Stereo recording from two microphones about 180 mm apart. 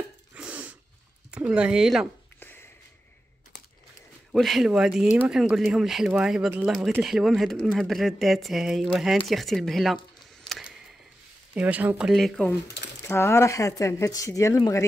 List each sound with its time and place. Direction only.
0.3 s a sound: 10° right (ahead or behind)
1.3 s speech: 5° right (ahead or behind)
2.4 s a sound: 10° left (ahead or behind)
4.3 s speech: centre (ahead or behind)
11.5 s speech: 10° right (ahead or behind)
13.0 s speech: 15° left (ahead or behind)